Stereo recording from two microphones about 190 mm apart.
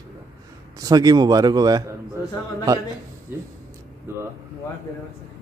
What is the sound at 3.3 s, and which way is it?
Speech, 10° right (ahead or behind).